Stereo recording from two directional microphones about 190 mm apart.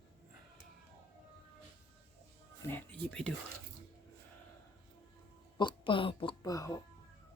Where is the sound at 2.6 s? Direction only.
10° left (ahead or behind).